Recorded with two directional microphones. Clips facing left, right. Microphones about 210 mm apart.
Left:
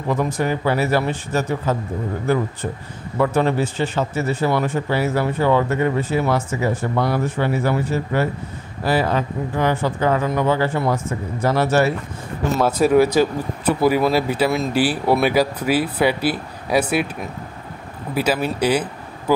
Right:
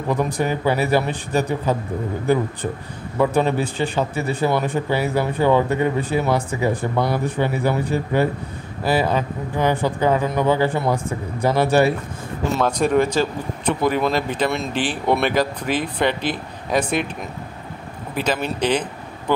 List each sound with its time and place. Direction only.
0.1 s speech: 15° right (ahead or behind)
3.2 s speech: 15° right (ahead or behind)
12.5 s speech: 5° left (ahead or behind)